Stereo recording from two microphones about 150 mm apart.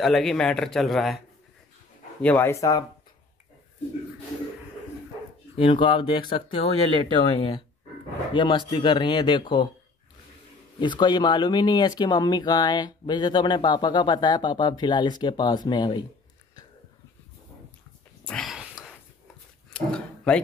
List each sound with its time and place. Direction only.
0.0 s a man's voice: centre (ahead or behind)
2.2 s speech: 15° left (ahead or behind)
5.6 s speech: 35° left (ahead or behind)
10.8 s speech: 30° left (ahead or behind)
18.2 s a sound: 5° left (ahead or behind)
19.7 s a sound: 5° left (ahead or behind)